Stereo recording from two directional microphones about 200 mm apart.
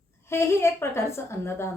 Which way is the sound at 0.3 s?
10° left (ahead or behind).